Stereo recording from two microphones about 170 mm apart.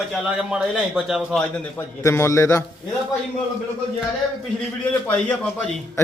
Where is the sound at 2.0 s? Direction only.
15° left (ahead or behind).